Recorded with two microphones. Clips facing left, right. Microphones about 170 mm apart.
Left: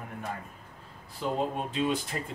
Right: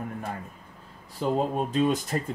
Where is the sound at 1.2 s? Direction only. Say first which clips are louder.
Right 4 dB; 45° right (ahead or behind).